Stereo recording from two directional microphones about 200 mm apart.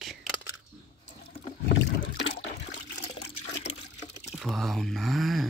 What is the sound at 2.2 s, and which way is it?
Water, 70° left (ahead or behind).